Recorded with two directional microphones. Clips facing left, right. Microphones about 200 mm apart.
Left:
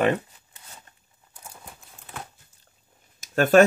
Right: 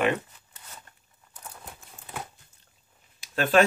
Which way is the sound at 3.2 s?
45° left (ahead or behind).